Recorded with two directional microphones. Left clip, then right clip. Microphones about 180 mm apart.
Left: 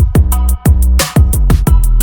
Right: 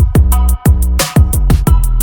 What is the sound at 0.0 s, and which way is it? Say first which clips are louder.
Music: even; centre (ahead or behind).